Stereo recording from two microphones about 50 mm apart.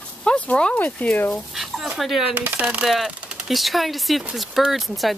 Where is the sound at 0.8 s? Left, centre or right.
Left.